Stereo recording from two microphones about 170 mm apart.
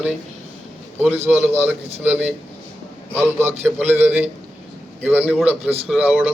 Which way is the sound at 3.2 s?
15° right (ahead or behind).